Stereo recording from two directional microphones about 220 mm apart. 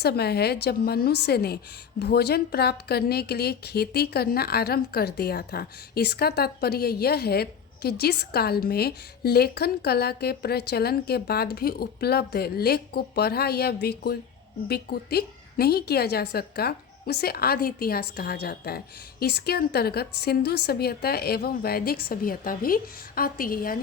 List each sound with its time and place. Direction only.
0.0 s a woman's voice: 45° left (ahead or behind)